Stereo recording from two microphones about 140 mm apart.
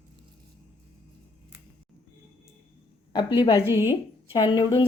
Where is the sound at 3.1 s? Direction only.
35° left (ahead or behind).